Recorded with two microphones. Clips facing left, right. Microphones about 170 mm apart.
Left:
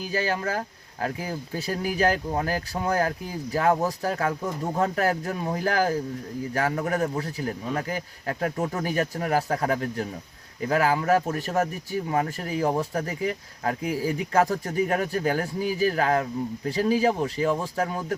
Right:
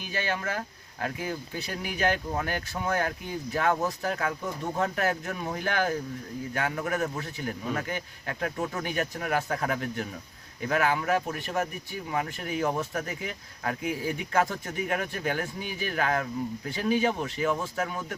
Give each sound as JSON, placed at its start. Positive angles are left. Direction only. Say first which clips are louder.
{"t": 0.0, "sound": "speech", "louder": "left 5 dB", "side_deg": 35}